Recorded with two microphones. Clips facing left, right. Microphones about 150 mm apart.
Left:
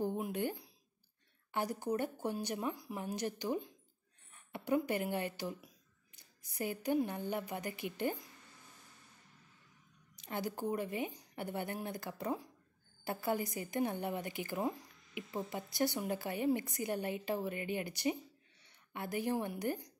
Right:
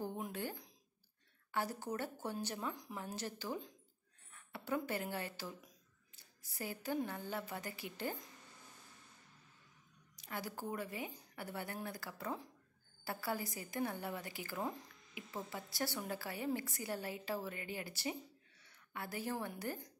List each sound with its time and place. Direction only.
0.0 s a sound: 15° left (ahead or behind)
1.5 s a woman's voice: 15° left (ahead or behind)
10.1 s a woman's voice: 25° left (ahead or behind)